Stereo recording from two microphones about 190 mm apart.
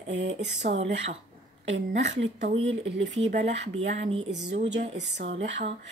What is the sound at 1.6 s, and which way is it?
Speech, 35° right (ahead or behind).